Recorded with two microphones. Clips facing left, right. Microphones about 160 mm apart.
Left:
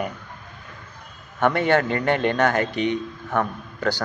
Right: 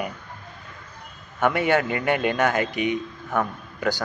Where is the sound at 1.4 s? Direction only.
10° right (ahead or behind).